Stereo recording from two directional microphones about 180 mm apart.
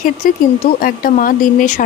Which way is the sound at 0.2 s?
50° left (ahead or behind).